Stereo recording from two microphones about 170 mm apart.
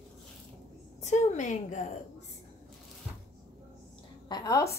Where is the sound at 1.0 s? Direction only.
45° left (ahead or behind).